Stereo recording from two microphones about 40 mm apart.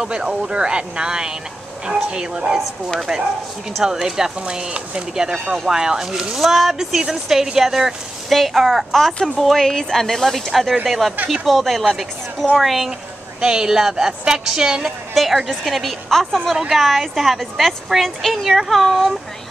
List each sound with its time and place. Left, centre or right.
0.0 s speech: centre
3.8 s speech: centre
6.3 s a woman's voice: centre
8.3 s a woman's voice: centre
13.4 s a woman's voice: centre